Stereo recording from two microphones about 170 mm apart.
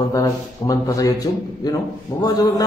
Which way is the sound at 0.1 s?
20° left (ahead or behind).